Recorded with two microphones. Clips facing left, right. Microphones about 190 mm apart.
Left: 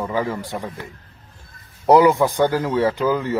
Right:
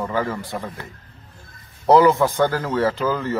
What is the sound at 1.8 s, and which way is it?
Speech, 15° left (ahead or behind).